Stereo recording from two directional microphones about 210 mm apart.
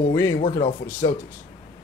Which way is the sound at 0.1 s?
15° left (ahead or behind).